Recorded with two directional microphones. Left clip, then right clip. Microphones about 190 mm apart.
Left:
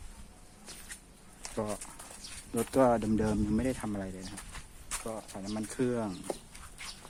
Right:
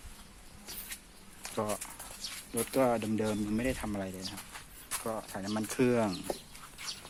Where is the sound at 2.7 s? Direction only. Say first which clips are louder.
Left 3 dB; 35° left (ahead or behind).